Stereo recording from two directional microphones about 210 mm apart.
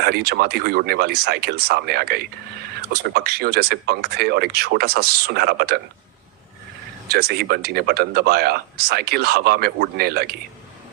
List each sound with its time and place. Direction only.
0.0 s speech: 50° right (ahead or behind)
7.1 s speech: 50° right (ahead or behind)